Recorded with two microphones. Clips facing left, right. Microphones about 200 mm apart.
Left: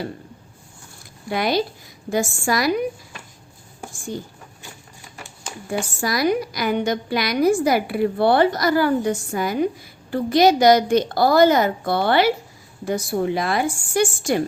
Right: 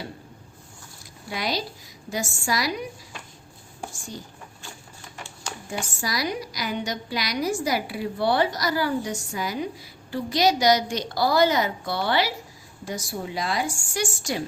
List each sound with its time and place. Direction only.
1.3 s a woman's voice: 55° left (ahead or behind)
6.0 s a woman's voice: 55° left (ahead or behind)